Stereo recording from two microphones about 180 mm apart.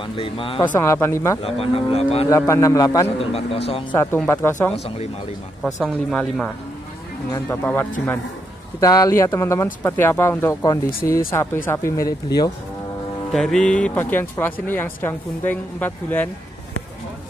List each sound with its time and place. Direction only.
0.0 s cattle: 30° left (ahead or behind)
0.6 s speech: 15° left (ahead or behind)
1.4 s cattle: 30° left (ahead or behind)
2.2 s speech: 15° left (ahead or behind)
3.2 s cattle: 35° left (ahead or behind)
3.9 s speech: 15° left (ahead or behind)
5.6 s speech: centre (ahead or behind)
7.3 s speech: 10° left (ahead or behind)
13.3 s speech: centre (ahead or behind)